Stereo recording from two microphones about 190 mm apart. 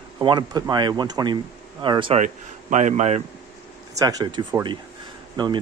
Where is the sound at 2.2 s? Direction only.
40° right (ahead or behind).